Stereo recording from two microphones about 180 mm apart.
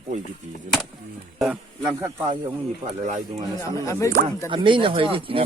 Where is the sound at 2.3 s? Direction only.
25° right (ahead or behind).